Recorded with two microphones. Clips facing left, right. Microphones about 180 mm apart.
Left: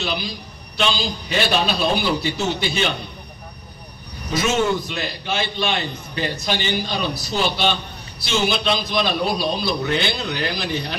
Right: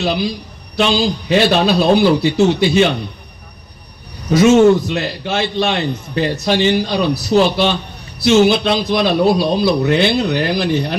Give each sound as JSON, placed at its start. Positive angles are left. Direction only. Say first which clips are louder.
{"t": 0.7, "sound": "a man's voice", "louder": "right 8 dB", "side_deg": -60}
{"t": 4.4, "sound": "a man's voice", "louder": "right 11 dB", "side_deg": -70}